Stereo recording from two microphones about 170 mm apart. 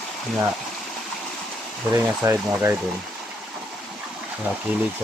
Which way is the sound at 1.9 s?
15° right (ahead or behind).